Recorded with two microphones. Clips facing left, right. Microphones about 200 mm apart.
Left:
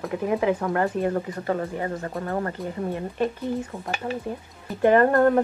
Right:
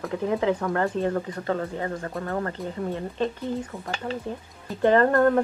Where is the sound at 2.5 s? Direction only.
15° left (ahead or behind).